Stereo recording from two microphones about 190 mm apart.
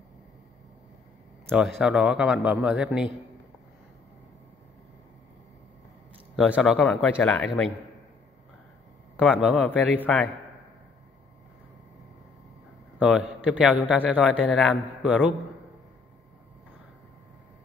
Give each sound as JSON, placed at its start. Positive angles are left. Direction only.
{"t": 1.5, "sound": "a man's voice", "side_deg": 0}
{"t": 6.3, "sound": "a man's voice", "side_deg": 0}
{"t": 9.1, "sound": "a man's voice", "side_deg": 0}
{"t": 13.0, "sound": "a man's voice", "side_deg": 0}